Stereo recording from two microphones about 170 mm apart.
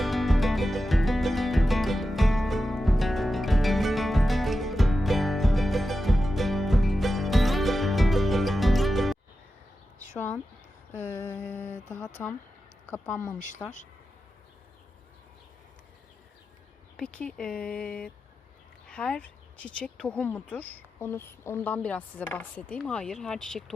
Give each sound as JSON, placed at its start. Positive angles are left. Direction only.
{"t": 0.0, "sound": "music", "side_deg": 0}
{"t": 10.2, "sound": "a sound", "side_deg": 10}
{"t": 12.9, "sound": "speech", "side_deg": 15}
{"t": 17.0, "sound": "speech", "side_deg": 5}